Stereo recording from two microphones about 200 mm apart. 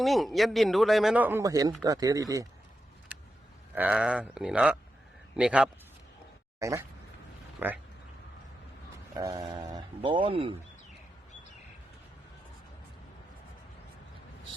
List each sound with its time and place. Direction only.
0.0 s speech: centre (ahead or behind); by 2.5 s 15° right (ahead or behind)
3.8 s speech: 5° right (ahead or behind)
6.6 s speech: 15° right (ahead or behind)
9.1 s speech: 20° right (ahead or behind)